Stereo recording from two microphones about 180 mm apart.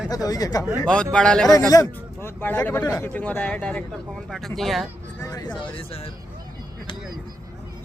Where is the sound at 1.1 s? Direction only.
5° left (ahead or behind).